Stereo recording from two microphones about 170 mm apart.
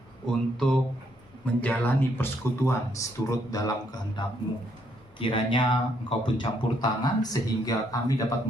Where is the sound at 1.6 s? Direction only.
10° left (ahead or behind); by 5.6 s 30° left (ahead or behind).